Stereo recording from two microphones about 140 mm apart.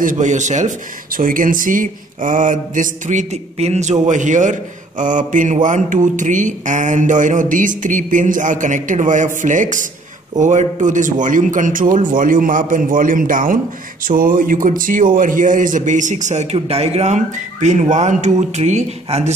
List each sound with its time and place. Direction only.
0.0 s a man's voice: 65° right (ahead or behind)
16.5 s speech: 45° right (ahead or behind)